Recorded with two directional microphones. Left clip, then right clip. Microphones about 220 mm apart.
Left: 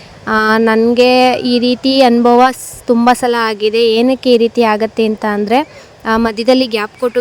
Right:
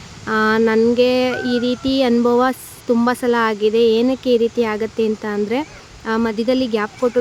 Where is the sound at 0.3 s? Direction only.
30° left (ahead or behind).